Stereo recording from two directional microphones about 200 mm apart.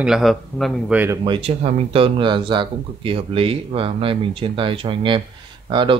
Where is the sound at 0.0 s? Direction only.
Centre (ahead or behind).